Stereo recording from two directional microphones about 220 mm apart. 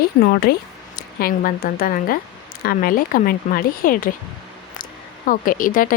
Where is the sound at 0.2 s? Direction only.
40° left (ahead or behind).